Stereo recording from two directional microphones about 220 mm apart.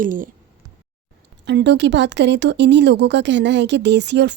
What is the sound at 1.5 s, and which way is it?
Speech, 50° right (ahead or behind).